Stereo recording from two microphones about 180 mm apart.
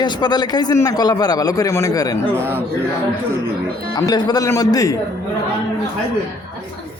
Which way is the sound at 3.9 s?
20° left (ahead or behind).